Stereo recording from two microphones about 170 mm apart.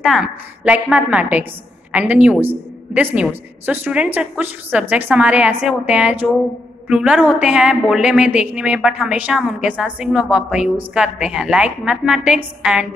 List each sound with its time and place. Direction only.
0.0 s a woman's voice: 5° right (ahead or behind)